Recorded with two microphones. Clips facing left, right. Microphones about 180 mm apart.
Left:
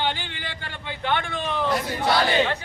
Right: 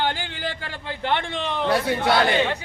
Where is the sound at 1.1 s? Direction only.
30° right (ahead or behind).